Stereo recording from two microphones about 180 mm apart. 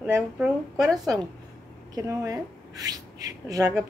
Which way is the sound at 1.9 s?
20° right (ahead or behind).